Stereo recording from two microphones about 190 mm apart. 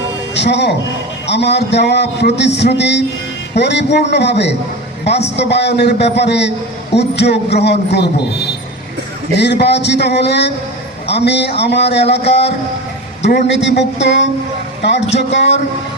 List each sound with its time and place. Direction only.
0.3 s a man's voice: 65° left (ahead or behind)
9.4 s a man's voice: 60° left (ahead or behind)